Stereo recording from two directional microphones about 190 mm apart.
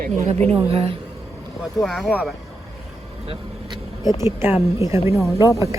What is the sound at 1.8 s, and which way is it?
Speech, centre (ahead or behind).